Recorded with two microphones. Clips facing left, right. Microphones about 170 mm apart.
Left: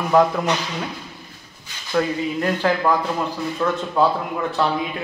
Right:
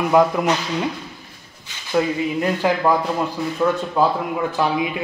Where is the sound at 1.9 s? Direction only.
10° right (ahead or behind).